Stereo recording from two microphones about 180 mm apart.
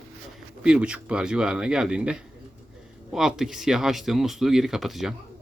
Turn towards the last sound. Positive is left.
turn(degrees=0)  # may be behind; listen again after turning